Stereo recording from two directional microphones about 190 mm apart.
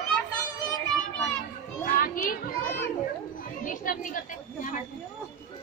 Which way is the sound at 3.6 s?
45° left (ahead or behind).